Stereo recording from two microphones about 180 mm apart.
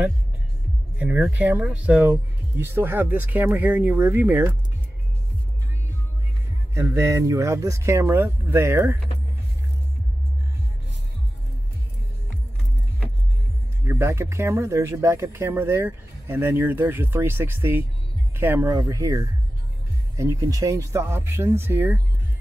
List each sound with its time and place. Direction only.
0.9 s speech: 5° right (ahead or behind)
6.7 s speech: 15° right (ahead or behind)
13.8 s speech: 15° right (ahead or behind)